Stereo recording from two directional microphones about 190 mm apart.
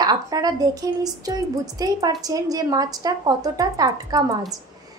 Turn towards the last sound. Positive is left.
turn(degrees=-20)  # may be behind; listen again after turning